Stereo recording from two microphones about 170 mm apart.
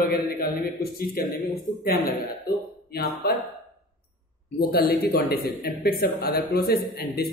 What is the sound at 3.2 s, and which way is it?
Speech, 65° left (ahead or behind).